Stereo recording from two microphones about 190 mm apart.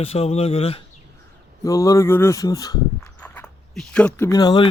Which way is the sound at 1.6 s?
15° left (ahead or behind).